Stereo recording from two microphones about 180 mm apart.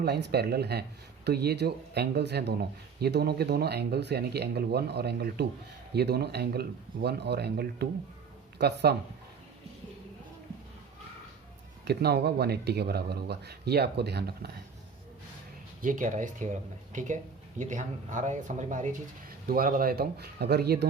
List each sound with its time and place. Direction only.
0.0 s speech: 65° right (ahead or behind)
11.9 s speech: 65° right (ahead or behind)
15.8 s speech: 45° right (ahead or behind); by 20.8 s 65° right (ahead or behind)